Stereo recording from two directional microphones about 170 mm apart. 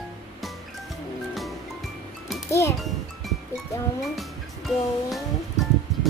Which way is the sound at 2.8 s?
Centre (ahead or behind).